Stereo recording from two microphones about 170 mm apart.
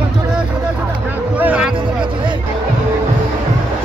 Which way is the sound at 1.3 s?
10° right (ahead or behind).